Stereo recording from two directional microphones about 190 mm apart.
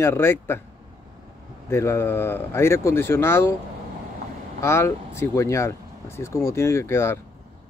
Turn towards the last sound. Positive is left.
turn(degrees=15)  # may be behind; listen again after turning